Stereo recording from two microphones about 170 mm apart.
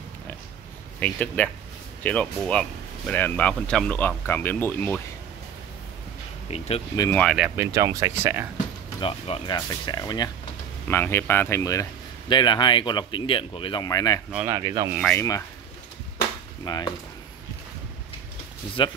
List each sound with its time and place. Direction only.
0.9 s speech: 10° left (ahead or behind)
7.2 s speech: centre (ahead or behind)
7.5 s speech: 15° right (ahead or behind)
9.0 s speech: 25° left (ahead or behind)
10.9 s speech: 15° left (ahead or behind)
14.3 s speech: 10° right (ahead or behind)
14.6 s speech: 25° right (ahead or behind)
15.0 s speech: 5° left (ahead or behind)
16.6 s speech: 25° left (ahead or behind)